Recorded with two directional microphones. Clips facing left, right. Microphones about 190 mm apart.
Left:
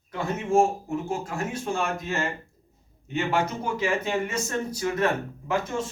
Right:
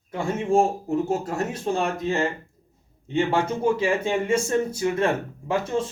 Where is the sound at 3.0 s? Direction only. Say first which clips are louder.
Right 3 dB; 30° right (ahead or behind).